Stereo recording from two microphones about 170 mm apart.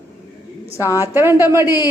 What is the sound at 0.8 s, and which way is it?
Speech, 20° left (ahead or behind).